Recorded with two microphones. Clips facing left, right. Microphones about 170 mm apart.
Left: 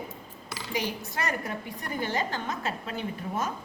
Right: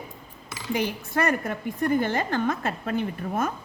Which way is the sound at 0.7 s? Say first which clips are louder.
Right 6 dB; 55° right (ahead or behind).